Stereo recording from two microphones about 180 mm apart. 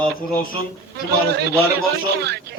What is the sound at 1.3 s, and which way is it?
A man's voice, 70° right (ahead or behind).